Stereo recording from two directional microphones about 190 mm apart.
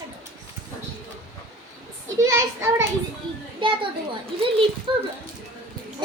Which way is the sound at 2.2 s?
15° right (ahead or behind).